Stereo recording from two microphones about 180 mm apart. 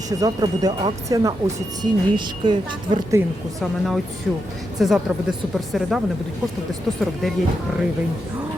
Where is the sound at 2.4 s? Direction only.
25° right (ahead or behind).